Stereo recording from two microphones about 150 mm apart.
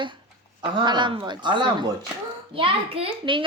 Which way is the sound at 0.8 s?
30° right (ahead or behind).